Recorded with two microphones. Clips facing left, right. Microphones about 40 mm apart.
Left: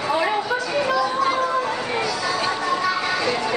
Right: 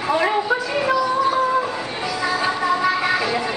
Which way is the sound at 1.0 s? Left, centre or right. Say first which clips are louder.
Right 2 dB; left.